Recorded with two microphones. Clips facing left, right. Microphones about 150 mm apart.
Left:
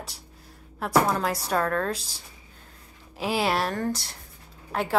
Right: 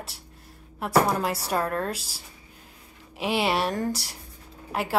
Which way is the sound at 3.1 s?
Centre (ahead or behind).